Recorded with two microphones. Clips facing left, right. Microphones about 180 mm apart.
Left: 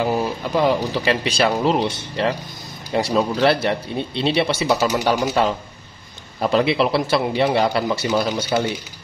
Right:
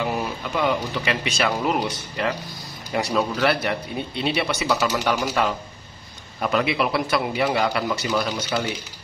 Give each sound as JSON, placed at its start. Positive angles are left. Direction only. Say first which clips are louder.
{"t": 0.0, "sound": "a man's voice", "louder": "left 5 dB", "side_deg": 30}